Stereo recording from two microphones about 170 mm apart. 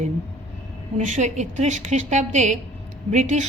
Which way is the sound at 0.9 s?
45° right (ahead or behind).